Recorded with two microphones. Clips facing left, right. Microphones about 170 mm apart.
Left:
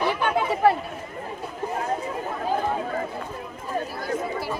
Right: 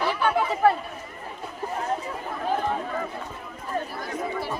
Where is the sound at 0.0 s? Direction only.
20° left (ahead or behind).